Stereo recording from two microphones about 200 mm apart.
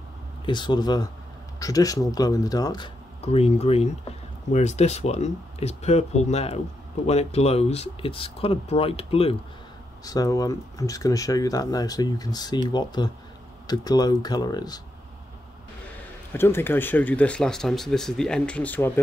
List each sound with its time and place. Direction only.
0.5 s speech: 20° left (ahead or behind)
10.0 s speech: 20° left (ahead or behind)
16.3 s speech: 10° left (ahead or behind)